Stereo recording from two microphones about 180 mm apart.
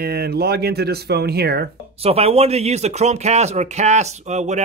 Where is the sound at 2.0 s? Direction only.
35° right (ahead or behind).